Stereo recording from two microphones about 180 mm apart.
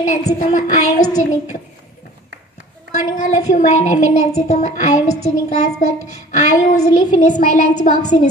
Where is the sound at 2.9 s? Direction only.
40° left (ahead or behind).